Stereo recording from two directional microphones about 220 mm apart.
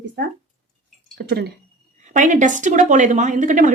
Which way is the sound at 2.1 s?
35° right (ahead or behind).